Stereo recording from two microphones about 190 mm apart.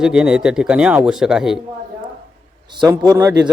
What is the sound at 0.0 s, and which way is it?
A man's voice, 5° right (ahead or behind).